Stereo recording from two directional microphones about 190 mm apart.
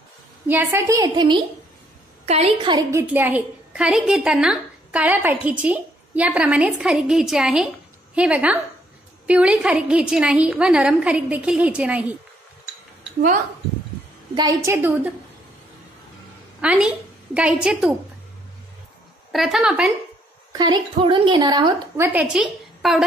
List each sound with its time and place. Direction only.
0.5 s a woman's voice: 10° right (ahead or behind); by 2.8 s 30° right (ahead or behind)
2.9 s a woman's voice: 10° right (ahead or behind)
14.3 s a woman's voice: 20° right (ahead or behind)
16.6 s a woman's voice: 5° right (ahead or behind)
19.3 s a woman's voice: centre (ahead or behind)
20.5 s a woman's voice: 20° right (ahead or behind)
21.9 s a woman's voice: 10° right (ahead or behind)